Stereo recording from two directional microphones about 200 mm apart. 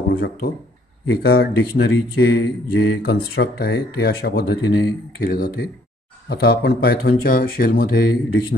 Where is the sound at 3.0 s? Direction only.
55° left (ahead or behind).